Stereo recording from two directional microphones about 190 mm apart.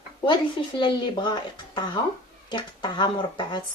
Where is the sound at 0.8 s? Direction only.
25° left (ahead or behind).